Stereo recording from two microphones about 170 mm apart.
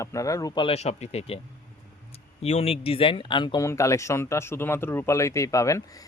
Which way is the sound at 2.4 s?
40° left (ahead or behind).